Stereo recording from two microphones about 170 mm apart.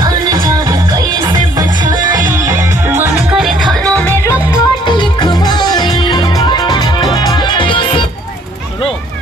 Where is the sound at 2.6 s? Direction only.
15° right (ahead or behind).